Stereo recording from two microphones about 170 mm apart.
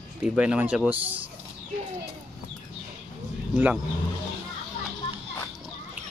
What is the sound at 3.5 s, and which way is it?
Speech, 10° right (ahead or behind).